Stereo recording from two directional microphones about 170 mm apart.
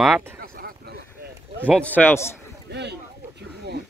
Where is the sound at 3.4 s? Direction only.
80° right.